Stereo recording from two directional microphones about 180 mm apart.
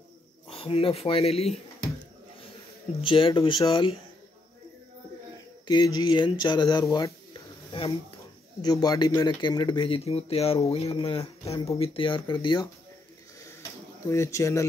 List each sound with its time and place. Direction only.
0.5 s speech: 30° left (ahead or behind)
3.0 s speech: 30° left (ahead or behind)
5.7 s speech: 20° left (ahead or behind)
7.7 s a sound: 30° left (ahead or behind)
8.6 s speech: 20° left (ahead or behind)
13.4 s a sound: 15° left (ahead or behind)